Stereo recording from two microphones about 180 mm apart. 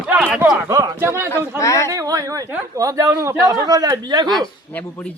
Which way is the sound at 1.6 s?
15° left (ahead or behind).